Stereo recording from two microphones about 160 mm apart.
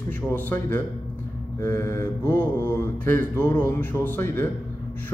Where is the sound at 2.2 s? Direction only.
15° right (ahead or behind).